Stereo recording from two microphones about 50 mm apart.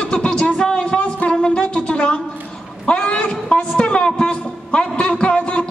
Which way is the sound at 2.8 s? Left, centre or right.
Centre.